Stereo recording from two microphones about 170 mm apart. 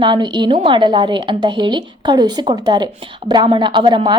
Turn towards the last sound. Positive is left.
turn(degrees=-30)  # may be behind; listen again after turning